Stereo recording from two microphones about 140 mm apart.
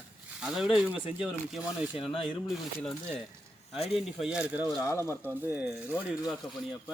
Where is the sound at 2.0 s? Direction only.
40° left (ahead or behind).